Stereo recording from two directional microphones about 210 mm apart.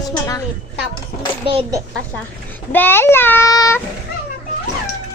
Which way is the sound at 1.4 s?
25° right (ahead or behind).